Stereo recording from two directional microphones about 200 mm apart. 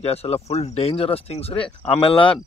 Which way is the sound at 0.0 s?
30° left (ahead or behind).